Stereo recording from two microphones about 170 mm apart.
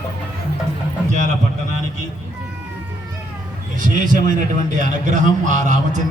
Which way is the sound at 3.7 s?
50° right (ahead or behind).